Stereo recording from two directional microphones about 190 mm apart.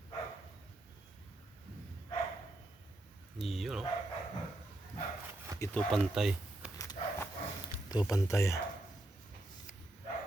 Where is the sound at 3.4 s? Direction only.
Centre (ahead or behind).